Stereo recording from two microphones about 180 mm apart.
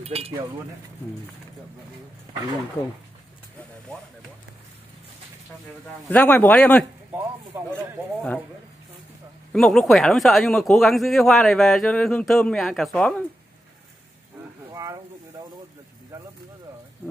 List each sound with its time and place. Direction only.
0.0 s speech: 35° right (ahead or behind)
6.0 s speech: 10° left (ahead or behind)
7.1 s speech: 10° right (ahead or behind)
9.5 s speech: centre (ahead or behind)
14.7 s a sound: 20° right (ahead or behind)